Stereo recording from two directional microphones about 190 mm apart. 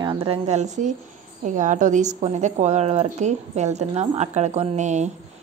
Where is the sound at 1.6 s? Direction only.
40° right (ahead or behind).